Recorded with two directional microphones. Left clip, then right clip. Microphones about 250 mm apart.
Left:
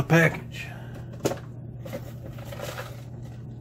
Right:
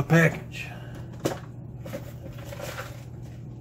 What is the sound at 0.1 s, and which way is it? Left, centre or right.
Speech, centre.